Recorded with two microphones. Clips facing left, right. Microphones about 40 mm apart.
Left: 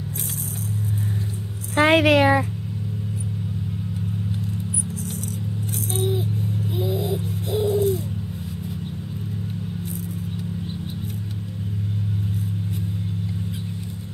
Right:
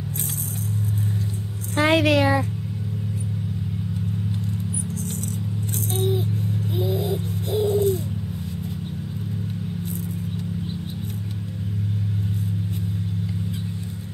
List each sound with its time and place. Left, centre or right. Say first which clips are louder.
1.8 s a woman's voice: left 2 dB; left
5.9 s music: right 1 dB; centre
6.7 s bird: right 1 dB; centre